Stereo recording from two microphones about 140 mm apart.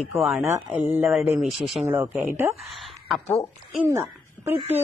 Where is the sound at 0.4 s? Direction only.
15° right (ahead or behind).